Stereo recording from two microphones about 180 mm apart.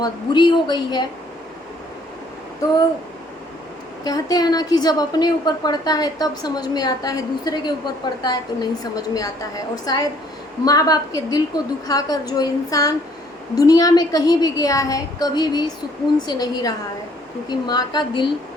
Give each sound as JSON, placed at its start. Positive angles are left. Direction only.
{"t": 0.0, "sound": "a woman's voice", "side_deg": 25}
{"t": 4.0, "sound": "a woman's voice", "side_deg": 20}